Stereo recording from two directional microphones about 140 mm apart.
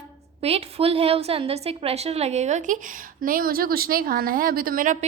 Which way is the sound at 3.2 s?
90° right.